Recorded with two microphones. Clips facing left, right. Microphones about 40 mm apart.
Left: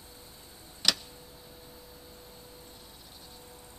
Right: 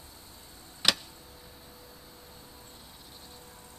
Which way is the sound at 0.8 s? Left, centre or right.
Right.